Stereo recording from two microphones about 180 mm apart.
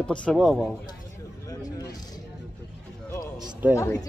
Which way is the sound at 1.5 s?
20° left (ahead or behind).